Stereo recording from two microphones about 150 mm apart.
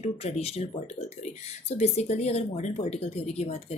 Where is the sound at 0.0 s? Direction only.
40° left (ahead or behind).